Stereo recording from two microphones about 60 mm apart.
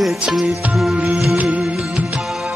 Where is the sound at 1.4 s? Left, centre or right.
Right.